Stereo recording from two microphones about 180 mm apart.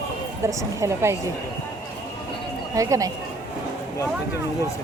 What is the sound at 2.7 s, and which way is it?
Speech, 20° right (ahead or behind).